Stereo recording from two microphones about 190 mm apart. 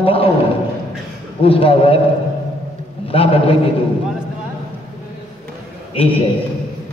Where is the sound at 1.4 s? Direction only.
30° left (ahead or behind).